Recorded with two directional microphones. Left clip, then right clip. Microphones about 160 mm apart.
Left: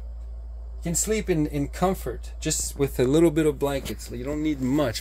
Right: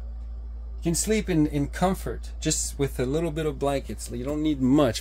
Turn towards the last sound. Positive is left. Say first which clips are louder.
# right 3 dB
turn(degrees=-35)  # may be behind; listen again after turning